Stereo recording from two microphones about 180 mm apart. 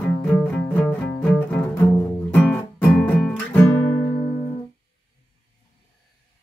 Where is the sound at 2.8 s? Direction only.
Centre (ahead or behind).